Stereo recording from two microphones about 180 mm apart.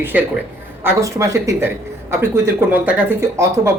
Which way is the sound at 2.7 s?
10° right (ahead or behind).